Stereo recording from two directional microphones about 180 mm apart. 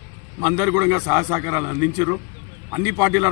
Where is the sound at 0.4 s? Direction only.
20° right (ahead or behind).